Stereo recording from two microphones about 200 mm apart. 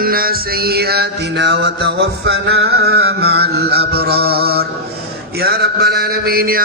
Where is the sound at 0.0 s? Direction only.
45° right (ahead or behind).